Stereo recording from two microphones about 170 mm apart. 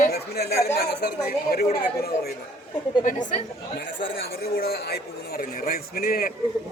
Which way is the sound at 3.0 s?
50° left (ahead or behind).